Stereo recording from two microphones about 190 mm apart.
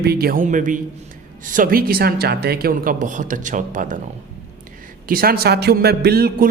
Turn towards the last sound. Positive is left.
turn(degrees=-50)  # may be behind; listen again after turning